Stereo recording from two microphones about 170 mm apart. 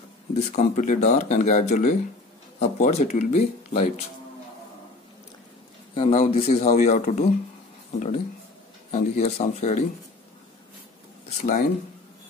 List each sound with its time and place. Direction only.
0.3 s speech: 40° left (ahead or behind)
5.9 s speech: 35° left (ahead or behind)
8.9 s speech: 40° left (ahead or behind)
11.2 s speech: 50° left (ahead or behind)